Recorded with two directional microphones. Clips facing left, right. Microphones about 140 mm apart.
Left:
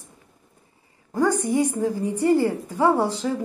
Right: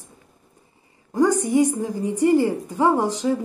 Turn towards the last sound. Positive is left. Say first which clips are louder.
# right 1 dB
turn(degrees=-15)  # may be behind; listen again after turning